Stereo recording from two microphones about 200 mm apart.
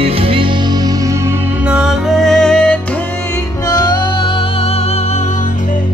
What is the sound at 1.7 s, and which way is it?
Music, centre (ahead or behind).